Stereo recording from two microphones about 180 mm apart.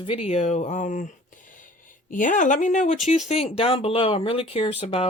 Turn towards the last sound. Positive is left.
turn(degrees=35)  # may be behind; listen again after turning